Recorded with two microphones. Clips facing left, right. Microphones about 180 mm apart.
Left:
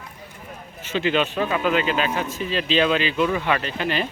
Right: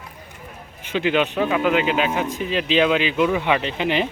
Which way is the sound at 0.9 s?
15° right (ahead or behind).